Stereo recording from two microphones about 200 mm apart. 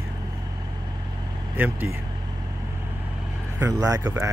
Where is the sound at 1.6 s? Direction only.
10° right (ahead or behind).